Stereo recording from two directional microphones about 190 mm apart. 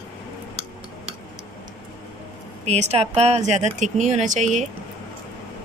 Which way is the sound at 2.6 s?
35° right (ahead or behind).